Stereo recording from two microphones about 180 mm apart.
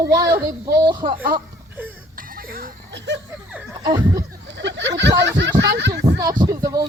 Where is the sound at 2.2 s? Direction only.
55° right (ahead or behind); by 3.2 s 75° right (ahead or behind).